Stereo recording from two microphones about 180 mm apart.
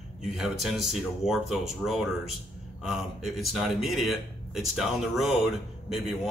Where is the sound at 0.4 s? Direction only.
Centre (ahead or behind).